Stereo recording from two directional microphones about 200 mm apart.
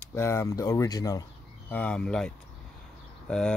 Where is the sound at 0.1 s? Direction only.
15° left (ahead or behind).